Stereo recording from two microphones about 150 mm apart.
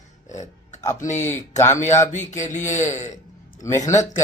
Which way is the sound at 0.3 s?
55° left (ahead or behind).